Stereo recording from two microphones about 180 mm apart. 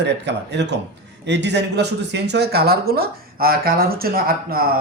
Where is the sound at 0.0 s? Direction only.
75° right (ahead or behind).